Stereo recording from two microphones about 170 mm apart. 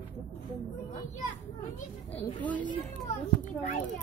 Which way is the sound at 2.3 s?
10° left (ahead or behind).